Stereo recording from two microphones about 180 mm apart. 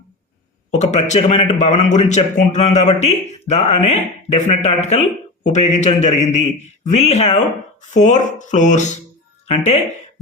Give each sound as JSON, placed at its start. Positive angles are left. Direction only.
{"t": 0.7, "sound": "a man's voice", "side_deg": 40}